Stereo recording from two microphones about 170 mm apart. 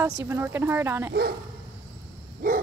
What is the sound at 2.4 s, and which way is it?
Dog, 55° right (ahead or behind).